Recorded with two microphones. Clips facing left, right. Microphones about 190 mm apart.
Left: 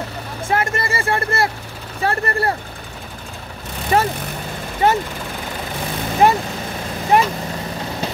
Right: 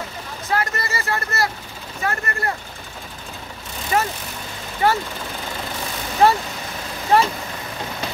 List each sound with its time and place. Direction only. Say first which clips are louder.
0.5 s speech: left 3 dB; 25° left (ahead or behind)
3.9 s speech: left 4 dB; 30° left (ahead or behind)
4.8 s speech: left 3 dB; 20° left (ahead or behind)
6.2 s speech: left 1 dB; 15° left (ahead or behind)